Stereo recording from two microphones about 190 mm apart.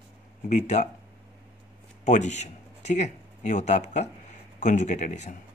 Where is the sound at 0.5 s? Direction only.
35° left (ahead or behind).